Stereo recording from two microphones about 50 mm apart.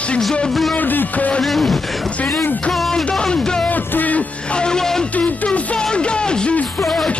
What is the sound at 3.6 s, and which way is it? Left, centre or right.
Music, left.